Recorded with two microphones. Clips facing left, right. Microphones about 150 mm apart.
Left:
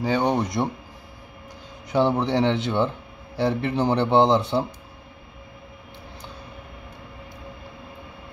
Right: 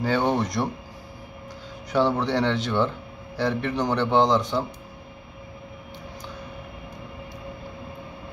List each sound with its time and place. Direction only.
0.0 s speech: 15° left (ahead or behind)
1.9 s a man's voice: 20° left (ahead or behind)